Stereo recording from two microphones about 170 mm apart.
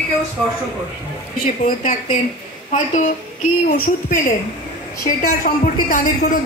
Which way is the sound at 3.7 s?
55° left (ahead or behind).